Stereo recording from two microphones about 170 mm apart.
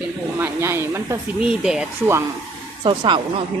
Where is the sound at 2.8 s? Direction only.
30° right (ahead or behind).